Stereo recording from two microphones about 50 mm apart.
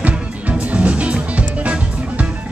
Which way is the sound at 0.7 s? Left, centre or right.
Right.